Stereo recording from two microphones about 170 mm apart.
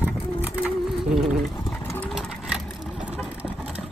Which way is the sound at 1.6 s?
15° left (ahead or behind).